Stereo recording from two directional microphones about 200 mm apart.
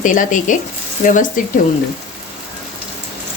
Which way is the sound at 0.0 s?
40° left (ahead or behind).